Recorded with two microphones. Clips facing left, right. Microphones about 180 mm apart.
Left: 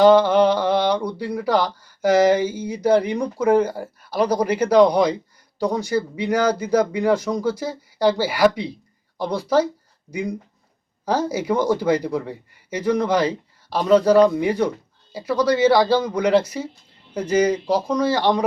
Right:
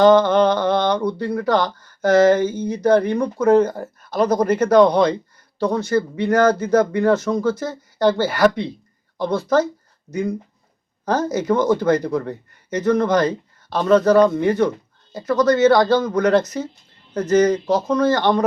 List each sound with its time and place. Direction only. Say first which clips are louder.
0.0 s speech: even; 10° left (ahead or behind)